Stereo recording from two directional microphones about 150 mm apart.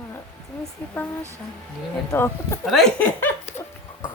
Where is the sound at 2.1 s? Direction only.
15° left (ahead or behind).